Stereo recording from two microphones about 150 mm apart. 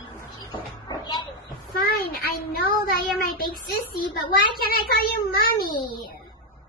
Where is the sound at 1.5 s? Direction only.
85° left.